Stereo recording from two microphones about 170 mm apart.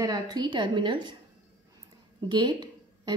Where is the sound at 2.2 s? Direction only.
25° right (ahead or behind).